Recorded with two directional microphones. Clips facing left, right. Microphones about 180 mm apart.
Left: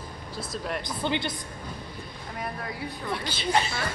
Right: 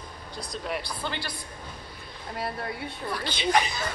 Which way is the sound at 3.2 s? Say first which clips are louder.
Right 2 dB; 5° left (ahead or behind).